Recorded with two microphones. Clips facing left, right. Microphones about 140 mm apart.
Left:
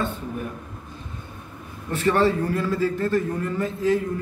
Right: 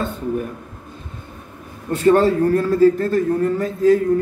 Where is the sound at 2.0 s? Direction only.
45° right (ahead or behind).